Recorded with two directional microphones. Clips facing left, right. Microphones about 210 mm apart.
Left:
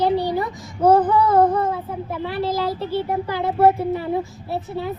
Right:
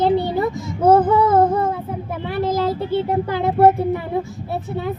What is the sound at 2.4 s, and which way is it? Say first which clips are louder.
Speech: right 4 dB; 50° right (ahead or behind).